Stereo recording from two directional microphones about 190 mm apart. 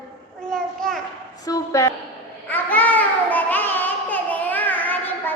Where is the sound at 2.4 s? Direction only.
10° left (ahead or behind).